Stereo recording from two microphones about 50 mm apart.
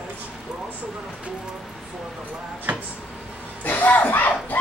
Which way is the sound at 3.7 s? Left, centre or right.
Left.